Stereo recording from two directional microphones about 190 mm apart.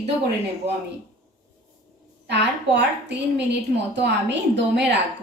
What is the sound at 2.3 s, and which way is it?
A woman's voice, 65° right (ahead or behind).